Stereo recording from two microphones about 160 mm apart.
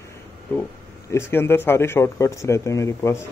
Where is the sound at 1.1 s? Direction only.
15° left (ahead or behind).